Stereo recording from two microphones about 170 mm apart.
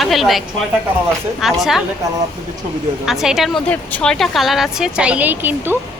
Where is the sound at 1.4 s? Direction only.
Centre (ahead or behind).